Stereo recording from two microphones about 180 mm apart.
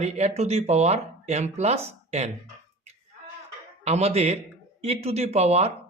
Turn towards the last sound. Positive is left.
turn(degrees=-35)  # may be behind; listen again after turning